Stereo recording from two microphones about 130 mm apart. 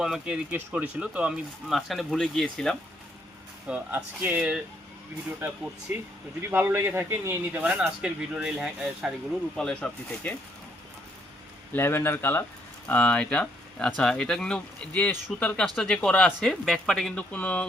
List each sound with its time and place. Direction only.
0.0 s speech: centre (ahead or behind)
3.7 s speech: 10° right (ahead or behind)
6.5 s speech: 15° right (ahead or behind)
9.6 s speech: 5° left (ahead or behind)
11.7 s speech: 15° left (ahead or behind)